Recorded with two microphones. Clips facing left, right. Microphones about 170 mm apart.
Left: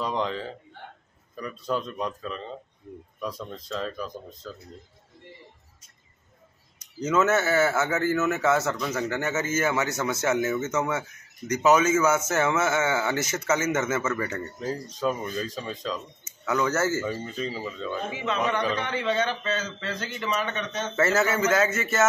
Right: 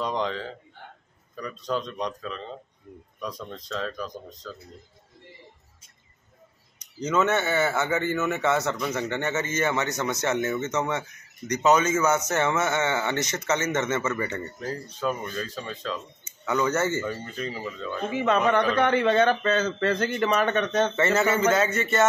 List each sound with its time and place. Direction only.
0.0 s a man's voice: centre (ahead or behind)
7.0 s a man's voice: 5° left (ahead or behind)
18.1 s a man's voice: 55° right (ahead or behind)
20.9 s a man's voice: centre (ahead or behind)